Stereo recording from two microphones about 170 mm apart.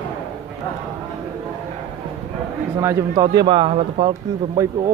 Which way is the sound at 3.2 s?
30° right (ahead or behind).